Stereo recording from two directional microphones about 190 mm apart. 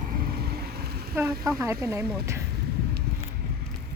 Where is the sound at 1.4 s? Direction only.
15° right (ahead or behind).